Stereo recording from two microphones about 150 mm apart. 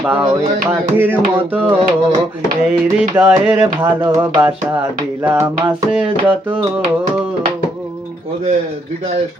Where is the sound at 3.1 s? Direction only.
15° right (ahead or behind).